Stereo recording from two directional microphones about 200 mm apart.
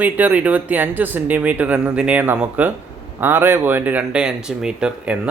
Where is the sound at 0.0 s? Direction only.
10° right (ahead or behind).